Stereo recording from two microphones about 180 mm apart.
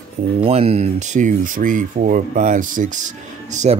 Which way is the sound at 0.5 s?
35° right (ahead or behind).